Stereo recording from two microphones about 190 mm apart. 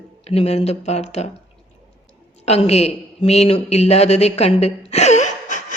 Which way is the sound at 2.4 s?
35° left (ahead or behind).